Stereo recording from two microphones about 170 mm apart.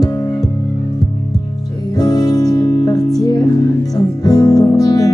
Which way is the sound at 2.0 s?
25° left (ahead or behind).